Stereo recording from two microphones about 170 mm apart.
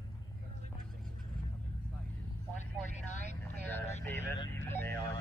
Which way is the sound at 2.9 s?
45° left (ahead or behind).